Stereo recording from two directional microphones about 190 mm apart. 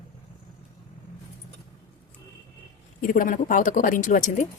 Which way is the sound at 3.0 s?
45° left (ahead or behind).